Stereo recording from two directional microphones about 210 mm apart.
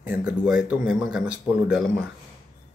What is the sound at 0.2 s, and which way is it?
Speech, 5° right (ahead or behind).